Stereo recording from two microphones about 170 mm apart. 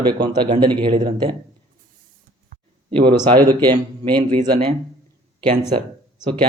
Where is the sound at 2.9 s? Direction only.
30° right (ahead or behind).